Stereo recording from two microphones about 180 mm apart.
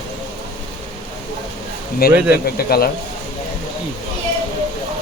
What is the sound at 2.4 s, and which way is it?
Speech, 60° left (ahead or behind).